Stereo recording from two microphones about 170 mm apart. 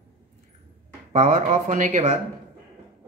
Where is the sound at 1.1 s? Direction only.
40° right (ahead or behind).